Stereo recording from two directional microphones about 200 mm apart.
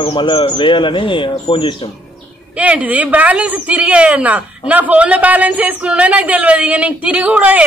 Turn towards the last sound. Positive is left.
turn(degrees=-5)  # may be behind; listen again after turning